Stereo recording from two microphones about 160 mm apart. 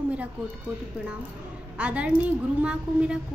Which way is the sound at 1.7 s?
10° right (ahead or behind).